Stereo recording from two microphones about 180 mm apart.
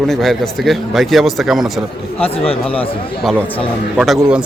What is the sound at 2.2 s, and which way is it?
Speech, 30° left (ahead or behind).